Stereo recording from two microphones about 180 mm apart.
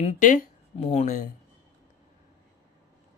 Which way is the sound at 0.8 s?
35° left (ahead or behind).